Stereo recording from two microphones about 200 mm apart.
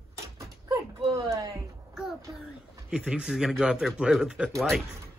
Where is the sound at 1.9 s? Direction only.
Centre (ahead or behind).